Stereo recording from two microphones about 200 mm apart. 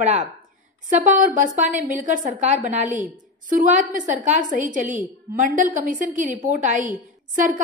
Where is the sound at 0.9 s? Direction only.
40° right (ahead or behind).